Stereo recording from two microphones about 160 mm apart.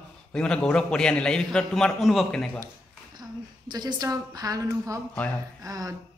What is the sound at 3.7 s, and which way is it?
A woman's voice, 25° right (ahead or behind).